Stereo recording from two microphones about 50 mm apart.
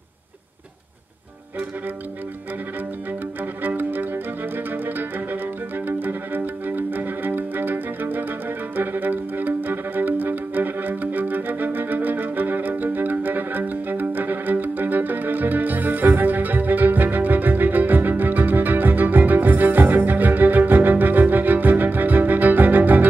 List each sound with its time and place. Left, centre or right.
3.6 s music: right